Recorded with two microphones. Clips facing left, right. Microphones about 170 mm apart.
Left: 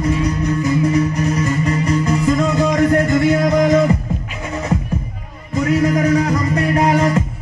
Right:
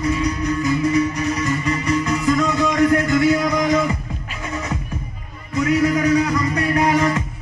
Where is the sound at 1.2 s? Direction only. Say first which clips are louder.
Left 3 dB; 40° left (ahead or behind).